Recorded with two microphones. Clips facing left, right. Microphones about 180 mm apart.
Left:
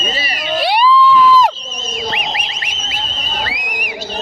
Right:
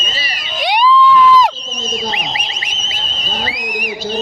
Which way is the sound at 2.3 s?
55° left (ahead or behind).